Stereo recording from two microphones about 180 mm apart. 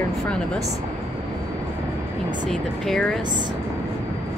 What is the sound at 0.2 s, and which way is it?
Speech, 5° left (ahead or behind).